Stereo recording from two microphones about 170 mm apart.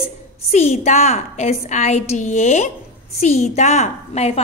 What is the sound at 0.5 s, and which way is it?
A woman's voice, 40° left (ahead or behind).